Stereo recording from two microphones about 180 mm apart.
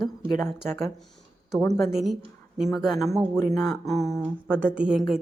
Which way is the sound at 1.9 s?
Centre (ahead or behind).